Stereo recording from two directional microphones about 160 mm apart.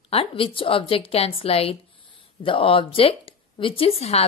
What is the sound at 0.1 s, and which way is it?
A woman's voice, 35° left (ahead or behind).